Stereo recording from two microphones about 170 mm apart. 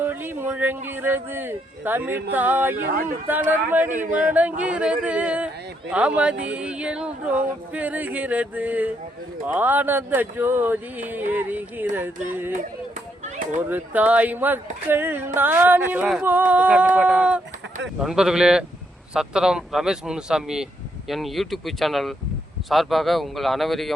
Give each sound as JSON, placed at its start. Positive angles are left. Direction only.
{"t": 0.0, "sound": "speech", "side_deg": -10}
{"t": 2.8, "sound": "speech", "side_deg": -60}
{"t": 3.2, "sound": "speech", "side_deg": -10}
{"t": 13.7, "sound": "speech", "side_deg": -10}